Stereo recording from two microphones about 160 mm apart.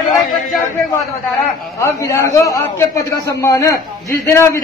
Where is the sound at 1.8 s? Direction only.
15° left (ahead or behind).